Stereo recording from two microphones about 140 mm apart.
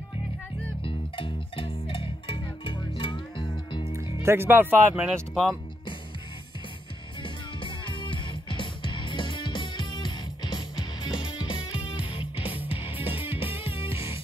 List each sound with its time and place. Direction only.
0.8 s music: 40° left (ahead or behind)
4.2 s speech: 15° right (ahead or behind)
5.1 s speech: centre (ahead or behind)
7.2 s music: 35° left (ahead or behind)